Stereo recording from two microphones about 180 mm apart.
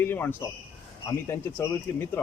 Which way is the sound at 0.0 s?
10° left (ahead or behind).